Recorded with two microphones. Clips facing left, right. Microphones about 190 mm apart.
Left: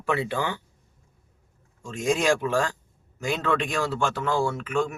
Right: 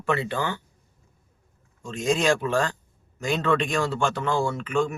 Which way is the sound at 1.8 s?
10° left (ahead or behind).